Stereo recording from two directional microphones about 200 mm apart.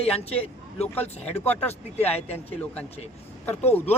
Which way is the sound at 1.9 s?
30° left (ahead or behind).